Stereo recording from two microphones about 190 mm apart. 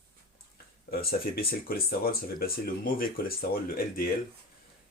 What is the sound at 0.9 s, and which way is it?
Speech, 55° left (ahead or behind).